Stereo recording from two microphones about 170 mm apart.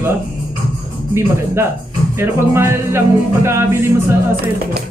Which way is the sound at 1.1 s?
15° right (ahead or behind).